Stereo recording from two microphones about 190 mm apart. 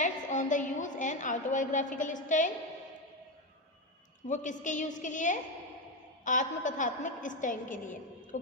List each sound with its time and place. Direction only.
0.0 s a woman's voice: 40° left (ahead or behind)
4.3 s a woman's voice: 40° left (ahead or behind)